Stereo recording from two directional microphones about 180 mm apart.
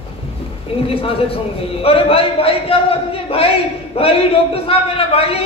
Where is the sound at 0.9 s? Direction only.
30° left (ahead or behind).